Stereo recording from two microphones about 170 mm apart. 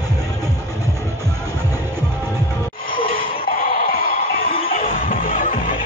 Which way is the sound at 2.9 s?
55° left (ahead or behind).